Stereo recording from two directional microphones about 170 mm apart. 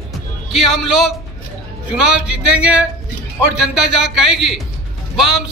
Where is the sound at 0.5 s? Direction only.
Centre (ahead or behind).